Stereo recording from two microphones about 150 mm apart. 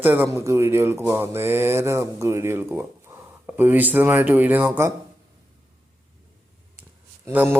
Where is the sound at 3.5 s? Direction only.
15° right (ahead or behind).